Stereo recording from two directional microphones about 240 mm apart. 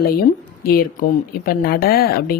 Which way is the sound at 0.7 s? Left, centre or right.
Left.